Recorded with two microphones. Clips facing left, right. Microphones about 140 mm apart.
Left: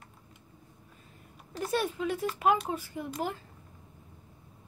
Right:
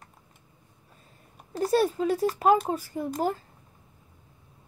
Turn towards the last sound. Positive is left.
turn(degrees=-40)  # may be behind; listen again after turning